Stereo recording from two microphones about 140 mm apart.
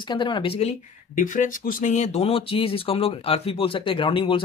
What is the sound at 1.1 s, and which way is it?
Speech, 70° left (ahead or behind).